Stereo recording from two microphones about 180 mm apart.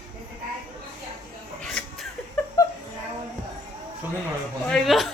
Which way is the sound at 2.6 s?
20° left (ahead or behind).